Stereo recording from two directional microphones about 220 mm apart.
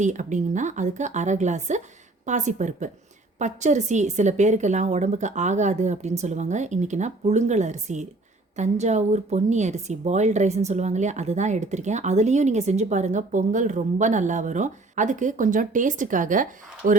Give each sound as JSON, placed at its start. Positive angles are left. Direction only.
{"t": 0.0, "sound": "a woman's voice", "side_deg": -35}